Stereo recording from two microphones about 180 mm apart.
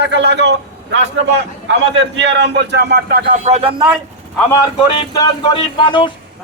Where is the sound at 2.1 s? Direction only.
80° right; by 3.8 s 30° right (ahead or behind).